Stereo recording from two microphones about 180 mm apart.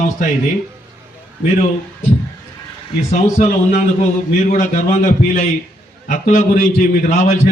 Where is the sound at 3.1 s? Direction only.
45° left (ahead or behind).